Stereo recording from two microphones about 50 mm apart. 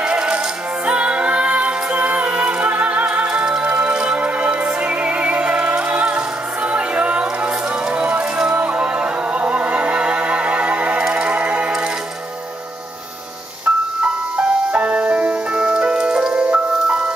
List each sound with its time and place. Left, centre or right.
0.0 s music: right
13.7 s music: right
14.3 s music: right